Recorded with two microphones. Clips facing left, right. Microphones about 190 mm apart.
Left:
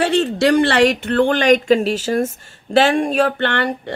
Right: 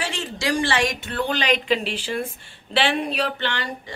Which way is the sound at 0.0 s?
65° left (ahead or behind).